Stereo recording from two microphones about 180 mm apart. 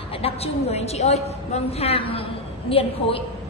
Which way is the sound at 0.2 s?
35° left (ahead or behind).